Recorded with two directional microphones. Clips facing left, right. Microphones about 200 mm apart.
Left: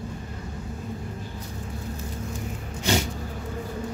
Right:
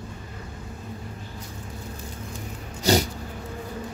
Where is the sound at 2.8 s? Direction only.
35° right (ahead or behind).